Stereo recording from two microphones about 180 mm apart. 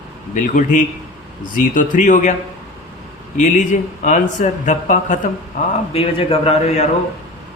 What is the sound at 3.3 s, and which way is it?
A man's voice, 45° left (ahead or behind).